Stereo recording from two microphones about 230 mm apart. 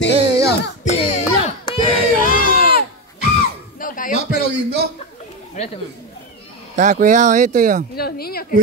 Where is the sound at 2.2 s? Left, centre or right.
Left.